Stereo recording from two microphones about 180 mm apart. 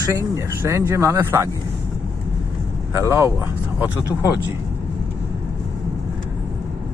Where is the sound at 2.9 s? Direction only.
15° right (ahead or behind).